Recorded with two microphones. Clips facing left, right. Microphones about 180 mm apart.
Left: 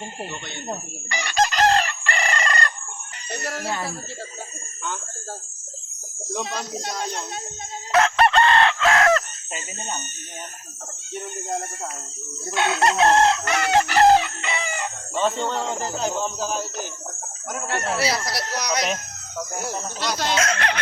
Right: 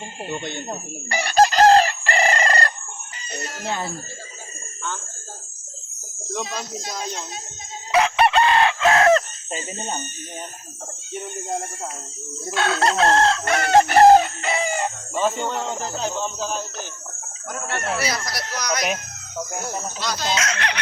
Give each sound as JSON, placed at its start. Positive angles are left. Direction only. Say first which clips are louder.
{"t": 1.1, "sound": "chicken", "louder": "right 5 dB", "side_deg": -35}
{"t": 7.9, "sound": "chicken", "louder": "even", "side_deg": -5}
{"t": 12.5, "sound": "chicken", "louder": "even", "side_deg": 15}
{"t": 13.4, "sound": "chicken", "louder": "right 4 dB", "side_deg": -45}
{"t": 15.1, "sound": "speech", "louder": "left 1 dB", "side_deg": -5}
{"t": 17.5, "sound": "chicken", "louder": "left 1 dB", "side_deg": 10}
{"t": 17.9, "sound": "speech", "louder": "left 2 dB", "side_deg": 30}
{"t": 20.1, "sound": "speech", "louder": "left 3 dB", "side_deg": 50}